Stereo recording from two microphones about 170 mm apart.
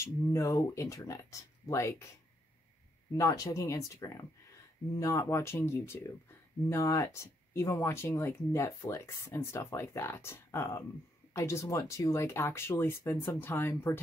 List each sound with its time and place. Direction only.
0.0 s speech: 15° left (ahead or behind)
3.2 s speech: 20° left (ahead or behind)